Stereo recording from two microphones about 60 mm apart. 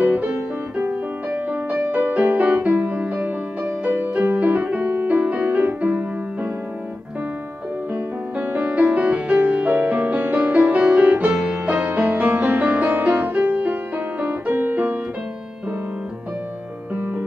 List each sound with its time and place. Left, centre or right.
0.0 s music: right
3.6 s music: right
7.9 s music: right